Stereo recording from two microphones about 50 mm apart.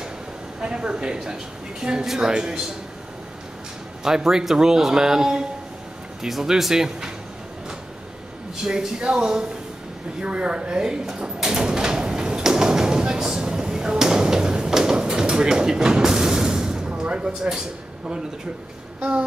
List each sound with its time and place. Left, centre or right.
0.6 s a woman's voice: centre
4.0 s a woman's voice: centre
8.6 s a woman's voice: centre
10.2 s door: right
18.9 s a sound: right